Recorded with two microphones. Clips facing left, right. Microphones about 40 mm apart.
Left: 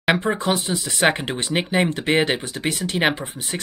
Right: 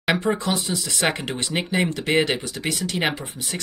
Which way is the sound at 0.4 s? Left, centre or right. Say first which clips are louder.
Left 3 dB; left.